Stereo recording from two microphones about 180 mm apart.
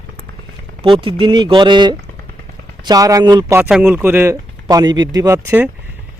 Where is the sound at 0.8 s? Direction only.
30° right (ahead or behind); by 5.7 s 10° right (ahead or behind).